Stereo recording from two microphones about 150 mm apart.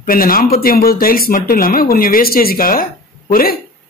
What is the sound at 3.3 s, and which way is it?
Speech, 85° left.